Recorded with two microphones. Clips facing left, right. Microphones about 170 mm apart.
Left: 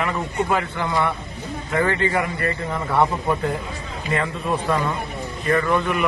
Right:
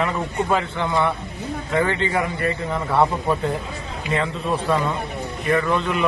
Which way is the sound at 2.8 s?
Centre (ahead or behind).